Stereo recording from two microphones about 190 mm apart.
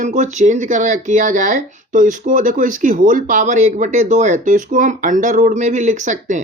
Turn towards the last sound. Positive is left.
turn(degrees=-40)  # may be behind; listen again after turning